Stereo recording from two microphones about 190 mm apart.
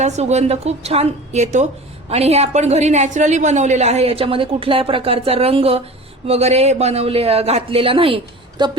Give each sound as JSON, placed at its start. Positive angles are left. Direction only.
{"t": 0.0, "sound": "a woman's voice", "side_deg": -35}